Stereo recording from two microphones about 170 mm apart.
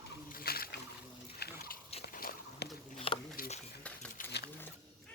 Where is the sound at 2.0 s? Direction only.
60° left (ahead or behind).